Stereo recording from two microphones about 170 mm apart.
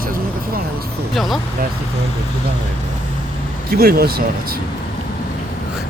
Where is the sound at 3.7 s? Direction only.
60° right (ahead or behind).